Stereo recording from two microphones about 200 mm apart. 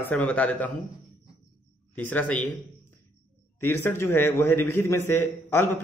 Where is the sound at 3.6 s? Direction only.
10° left (ahead or behind).